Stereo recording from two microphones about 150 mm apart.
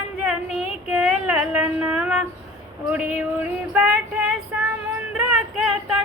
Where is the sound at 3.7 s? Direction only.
10° right (ahead or behind).